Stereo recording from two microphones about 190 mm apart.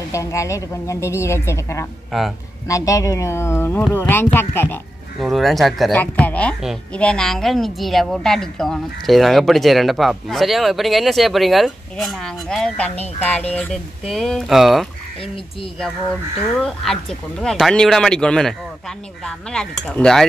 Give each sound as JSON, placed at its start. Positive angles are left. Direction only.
{"t": 0.1, "sound": "speech", "side_deg": 15}
{"t": 5.2, "sound": "speech", "side_deg": 0}
{"t": 16.6, "sound": "speech", "side_deg": 5}